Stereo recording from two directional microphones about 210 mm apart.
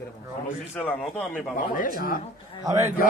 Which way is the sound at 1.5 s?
40° left (ahead or behind).